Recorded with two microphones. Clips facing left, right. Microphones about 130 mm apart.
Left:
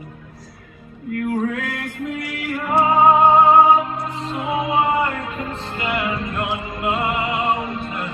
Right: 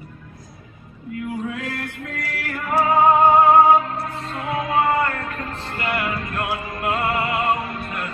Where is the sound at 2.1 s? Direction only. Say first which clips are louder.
Left 6 dB; 10° left (ahead or behind).